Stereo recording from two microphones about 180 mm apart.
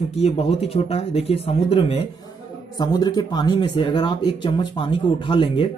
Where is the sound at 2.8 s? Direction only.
20° left (ahead or behind).